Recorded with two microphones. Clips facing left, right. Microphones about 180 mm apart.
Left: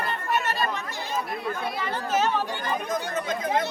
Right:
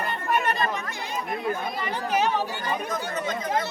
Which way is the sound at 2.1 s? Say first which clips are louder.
Even; 15° right (ahead or behind).